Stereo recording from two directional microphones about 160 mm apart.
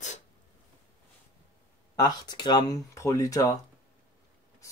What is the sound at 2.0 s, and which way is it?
Speech, 25° left (ahead or behind).